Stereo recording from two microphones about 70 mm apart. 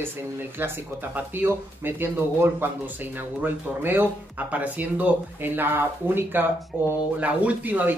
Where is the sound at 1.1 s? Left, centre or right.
Right.